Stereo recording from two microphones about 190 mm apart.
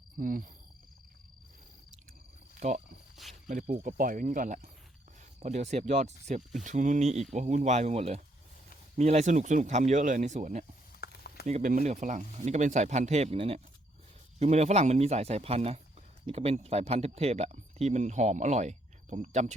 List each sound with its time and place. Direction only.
0.2 s speech: 45° right (ahead or behind)
2.6 s speech: 40° right (ahead or behind)
3.2 s cricket: centre (ahead or behind)
3.5 s speech: 45° right (ahead or behind)
11.0 s a sound: 55° left (ahead or behind)
11.4 s speech: 40° right (ahead or behind)